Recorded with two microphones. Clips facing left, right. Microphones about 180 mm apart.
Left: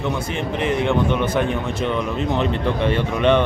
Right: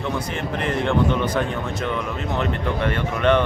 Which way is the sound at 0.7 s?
20° left (ahead or behind).